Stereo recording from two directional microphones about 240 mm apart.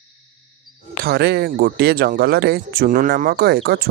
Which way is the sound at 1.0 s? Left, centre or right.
Right.